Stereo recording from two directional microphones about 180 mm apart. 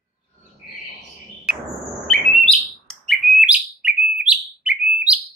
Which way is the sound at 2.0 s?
Centre (ahead or behind).